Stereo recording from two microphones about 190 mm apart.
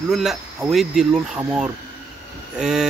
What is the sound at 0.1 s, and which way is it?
Speech, centre (ahead or behind).